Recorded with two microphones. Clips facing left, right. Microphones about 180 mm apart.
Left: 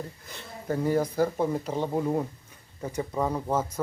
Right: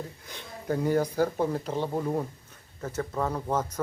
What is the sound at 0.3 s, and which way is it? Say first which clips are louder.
Speech: right 1 dB; centre (ahead or behind).